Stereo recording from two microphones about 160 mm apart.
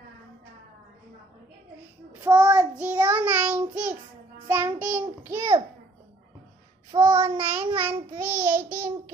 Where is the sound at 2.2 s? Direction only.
10° right (ahead or behind).